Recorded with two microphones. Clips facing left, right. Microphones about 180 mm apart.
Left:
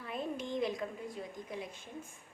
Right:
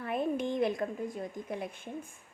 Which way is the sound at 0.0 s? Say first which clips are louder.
Right 7 dB; 60° right (ahead or behind).